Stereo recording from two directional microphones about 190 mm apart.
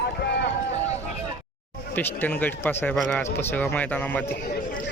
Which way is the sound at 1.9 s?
10° left (ahead or behind).